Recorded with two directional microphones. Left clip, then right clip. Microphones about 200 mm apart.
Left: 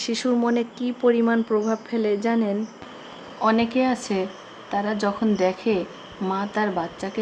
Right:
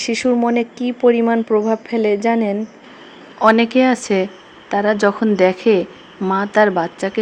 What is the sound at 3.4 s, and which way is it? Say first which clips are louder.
Speech: right 8 dB; 35° right (ahead or behind).